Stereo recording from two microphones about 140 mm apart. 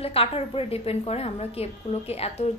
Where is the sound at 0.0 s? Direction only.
45° left (ahead or behind).